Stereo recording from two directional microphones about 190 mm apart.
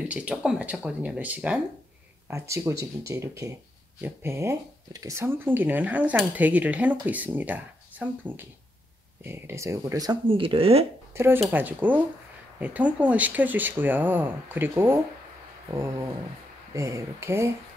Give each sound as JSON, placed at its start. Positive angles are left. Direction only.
{"t": 0.1, "sound": "speech", "side_deg": -5}
{"t": 11.1, "sound": "speech", "side_deg": -10}
{"t": 16.7, "sound": "speech", "side_deg": -15}